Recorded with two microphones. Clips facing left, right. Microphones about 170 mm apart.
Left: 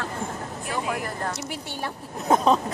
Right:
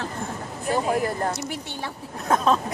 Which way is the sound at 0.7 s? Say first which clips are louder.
Right 7 dB; 35° right (ahead or behind).